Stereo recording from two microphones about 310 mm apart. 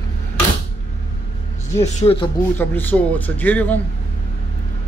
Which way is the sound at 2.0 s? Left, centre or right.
Centre.